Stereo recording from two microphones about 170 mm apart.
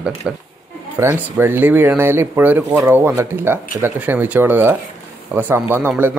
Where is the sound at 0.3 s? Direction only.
5° right (ahead or behind).